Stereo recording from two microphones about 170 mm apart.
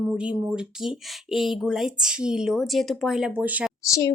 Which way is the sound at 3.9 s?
20° left (ahead or behind).